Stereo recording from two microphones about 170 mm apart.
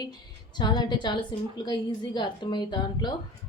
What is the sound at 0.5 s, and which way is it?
Speech, 25° left (ahead or behind).